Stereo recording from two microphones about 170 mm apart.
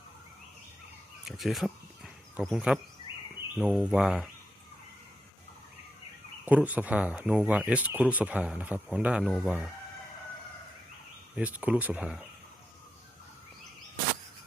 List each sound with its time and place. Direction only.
1.2 s speech: centre (ahead or behind)
6.4 s speech: 10° right (ahead or behind)
11.3 s speech: 10° right (ahead or behind)